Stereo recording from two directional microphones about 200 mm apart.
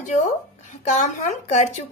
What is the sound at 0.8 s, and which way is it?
Speech, 35° left (ahead or behind).